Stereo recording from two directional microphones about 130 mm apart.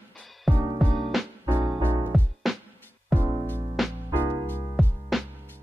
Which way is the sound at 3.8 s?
Centre (ahead or behind).